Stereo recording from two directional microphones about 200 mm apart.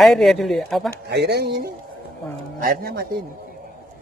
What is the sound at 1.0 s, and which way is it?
Speech, 55° right (ahead or behind).